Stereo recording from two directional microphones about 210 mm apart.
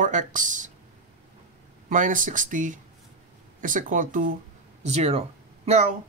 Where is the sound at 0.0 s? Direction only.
35° right (ahead or behind).